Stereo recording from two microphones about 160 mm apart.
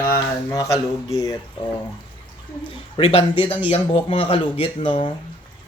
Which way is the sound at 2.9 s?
35° left (ahead or behind).